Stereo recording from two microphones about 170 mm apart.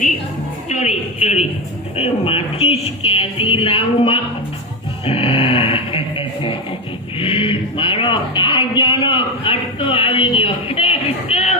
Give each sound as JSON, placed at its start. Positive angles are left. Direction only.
{"t": 0.7, "sound": "speech", "side_deg": 40}
{"t": 5.0, "sound": "a sound", "side_deg": 35}
{"t": 7.2, "sound": "speech", "side_deg": 30}